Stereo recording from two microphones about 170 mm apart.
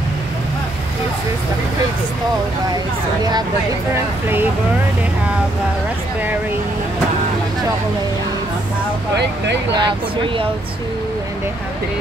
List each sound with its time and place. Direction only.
9.1 s speech: 85° right
9.8 s speech: 30° right (ahead or behind)